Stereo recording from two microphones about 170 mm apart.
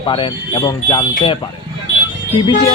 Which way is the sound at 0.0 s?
30° left (ahead or behind).